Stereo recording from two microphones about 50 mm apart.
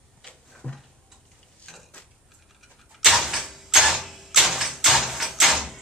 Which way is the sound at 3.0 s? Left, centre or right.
Centre.